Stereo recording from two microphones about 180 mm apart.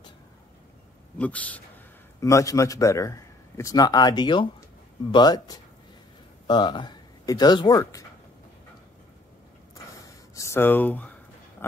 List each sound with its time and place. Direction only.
1.1 s a man's voice: 5° left (ahead or behind)
10.3 s speech: 15° left (ahead or behind)